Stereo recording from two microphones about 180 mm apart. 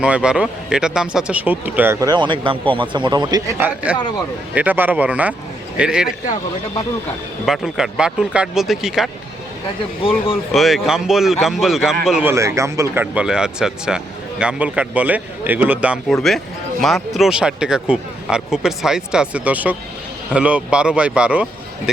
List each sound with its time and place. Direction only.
0.0 s speech: 5° right (ahead or behind)
3.9 s speech: 5° right (ahead or behind)
7.4 s speech: centre (ahead or behind)
10.0 s speech: 30° left (ahead or behind)
10.5 s speech: centre (ahead or behind)
12.3 s speech: 15° right (ahead or behind)